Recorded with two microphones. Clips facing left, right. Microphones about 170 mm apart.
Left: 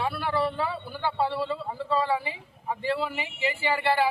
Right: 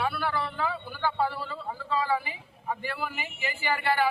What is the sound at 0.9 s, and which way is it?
A man's voice, 25° left (ahead or behind).